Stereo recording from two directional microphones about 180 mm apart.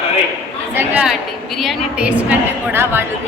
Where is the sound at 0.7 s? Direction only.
10° right (ahead or behind).